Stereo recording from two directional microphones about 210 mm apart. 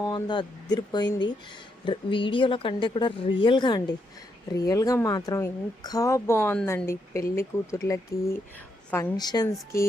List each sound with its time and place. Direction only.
0.0 s a woman's voice: 20° left (ahead or behind)
9.1 s speech: 20° left (ahead or behind)